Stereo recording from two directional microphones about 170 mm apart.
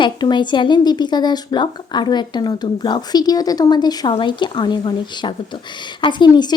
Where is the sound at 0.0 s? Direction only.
25° left (ahead or behind).